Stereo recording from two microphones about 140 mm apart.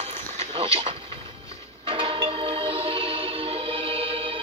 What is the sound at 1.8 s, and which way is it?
Music, 40° right (ahead or behind).